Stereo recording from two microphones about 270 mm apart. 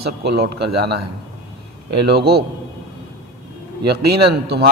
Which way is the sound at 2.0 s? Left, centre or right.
Right.